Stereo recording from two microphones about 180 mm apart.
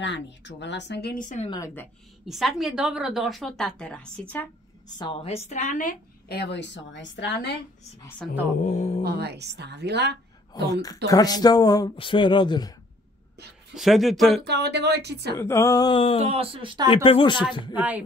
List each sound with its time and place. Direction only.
0.0 s a woman's voice: 80° left
1.2 s a woman's voice: 40° left (ahead or behind)
2.2 s a woman's voice: centre (ahead or behind)
4.9 s a woman's voice: 30° left (ahead or behind); by 5.9 s 45° left (ahead or behind)
6.2 s a woman's voice: 65° left (ahead or behind)
8.6 s a woman's voice: 40° left (ahead or behind)
9.0 s a woman's voice: 65° right (ahead or behind)
10.5 s speech: 20° left (ahead or behind)
13.7 s a woman's voice: centre (ahead or behind)
14.4 s a woman's voice: 70° right (ahead or behind)
15.3 s speech: 15° left (ahead or behind)
16.2 s speech: 35° right (ahead or behind)
16.9 s speech: 30° left (ahead or behind)
17.7 s speech: 10° right (ahead or behind)